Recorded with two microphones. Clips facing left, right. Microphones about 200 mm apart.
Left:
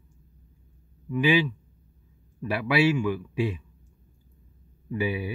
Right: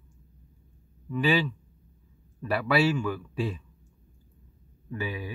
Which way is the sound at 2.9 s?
10° left (ahead or behind).